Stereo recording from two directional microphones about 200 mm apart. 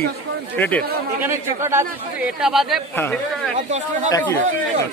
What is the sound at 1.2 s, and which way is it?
Speech, 15° right (ahead or behind).